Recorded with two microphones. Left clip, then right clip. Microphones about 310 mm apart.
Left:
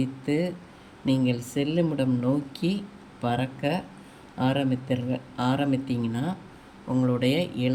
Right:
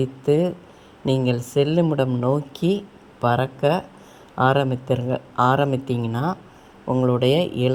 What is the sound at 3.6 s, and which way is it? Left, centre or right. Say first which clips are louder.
Speech: right 8 dB; right.